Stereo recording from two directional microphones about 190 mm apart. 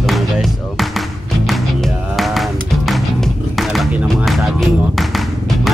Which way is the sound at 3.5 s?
Centre (ahead or behind).